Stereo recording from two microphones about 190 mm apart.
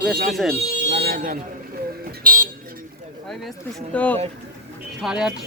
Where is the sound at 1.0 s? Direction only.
45° right (ahead or behind).